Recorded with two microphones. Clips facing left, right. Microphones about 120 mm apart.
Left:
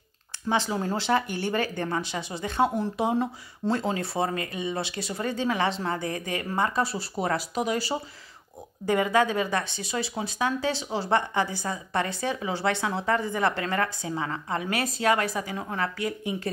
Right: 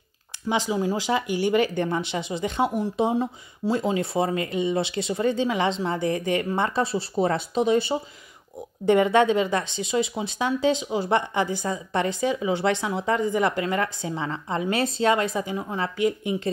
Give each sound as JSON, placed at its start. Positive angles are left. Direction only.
{"t": 0.5, "sound": "speech", "side_deg": -15}